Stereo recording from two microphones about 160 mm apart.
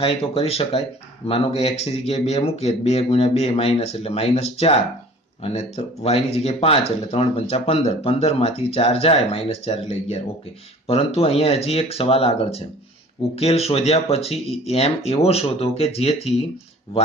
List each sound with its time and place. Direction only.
0.0 s speech: 35° left (ahead or behind)